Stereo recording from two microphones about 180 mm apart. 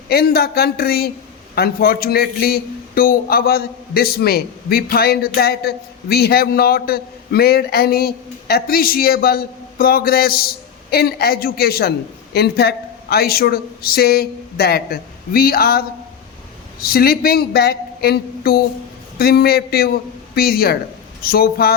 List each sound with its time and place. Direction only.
0.1 s speech: 60° left (ahead or behind)
16.8 s speech: 55° left (ahead or behind)